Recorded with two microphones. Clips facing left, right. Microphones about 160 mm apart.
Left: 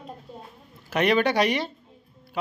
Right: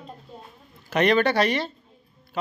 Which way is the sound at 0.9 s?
5° left (ahead or behind).